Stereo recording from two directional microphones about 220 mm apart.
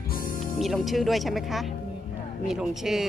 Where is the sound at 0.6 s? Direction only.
Centre (ahead or behind).